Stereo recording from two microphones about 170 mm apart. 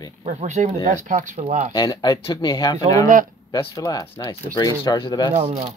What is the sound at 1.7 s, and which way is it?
Speech, 25° left (ahead or behind).